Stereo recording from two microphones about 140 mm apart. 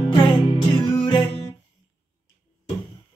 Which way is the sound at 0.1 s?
35° left (ahead or behind).